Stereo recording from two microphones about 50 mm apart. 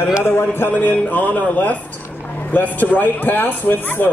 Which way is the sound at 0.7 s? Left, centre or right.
Left.